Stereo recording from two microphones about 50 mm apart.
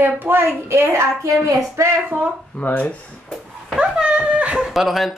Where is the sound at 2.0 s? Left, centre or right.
Right.